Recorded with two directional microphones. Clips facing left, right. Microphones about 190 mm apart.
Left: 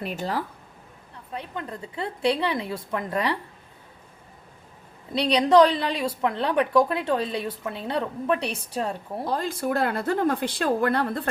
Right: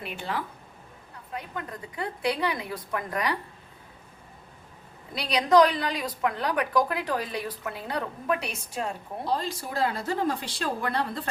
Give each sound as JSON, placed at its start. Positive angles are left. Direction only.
{"t": 0.0, "sound": "a woman's voice", "side_deg": 40}
{"t": 5.1, "sound": "a woman's voice", "side_deg": 30}
{"t": 9.2, "sound": "speech", "side_deg": 50}